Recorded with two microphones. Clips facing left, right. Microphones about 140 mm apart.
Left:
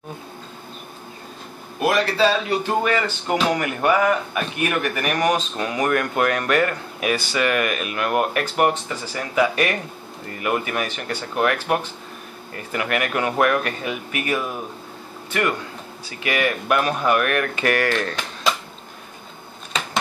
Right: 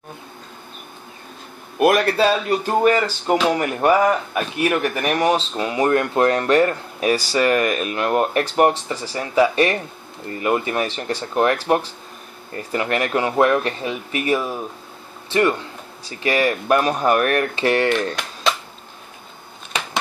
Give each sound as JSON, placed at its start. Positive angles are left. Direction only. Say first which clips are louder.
{"t": 1.8, "sound": "a man's voice", "louder": "right 3 dB", "side_deg": -55}
{"t": 2.8, "sound": "speech", "louder": "right 5 dB", "side_deg": -40}